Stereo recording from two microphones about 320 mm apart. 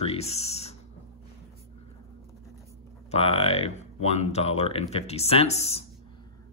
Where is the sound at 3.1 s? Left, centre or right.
Centre.